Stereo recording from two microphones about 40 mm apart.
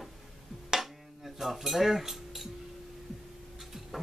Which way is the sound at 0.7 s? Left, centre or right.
Centre.